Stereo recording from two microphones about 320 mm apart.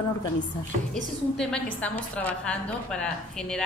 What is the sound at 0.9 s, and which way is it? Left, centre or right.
A woman's voice, centre.